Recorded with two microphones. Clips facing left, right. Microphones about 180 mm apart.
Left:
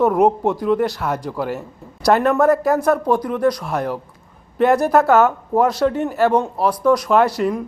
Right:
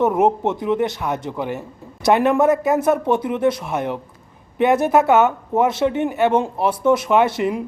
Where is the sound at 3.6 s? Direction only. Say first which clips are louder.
Left 1 dB; centre (ahead or behind).